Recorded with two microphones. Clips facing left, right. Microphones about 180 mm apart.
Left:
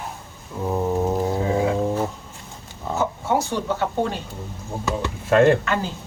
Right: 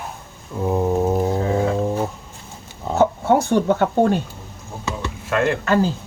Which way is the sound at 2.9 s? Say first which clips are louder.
Right 6 dB; 60° right (ahead or behind).